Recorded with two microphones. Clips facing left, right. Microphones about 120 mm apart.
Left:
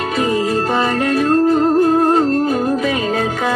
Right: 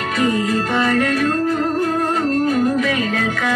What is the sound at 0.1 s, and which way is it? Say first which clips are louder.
Music: even; 25° left (ahead or behind).